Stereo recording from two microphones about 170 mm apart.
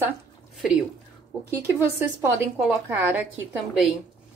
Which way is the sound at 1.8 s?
15° right (ahead or behind).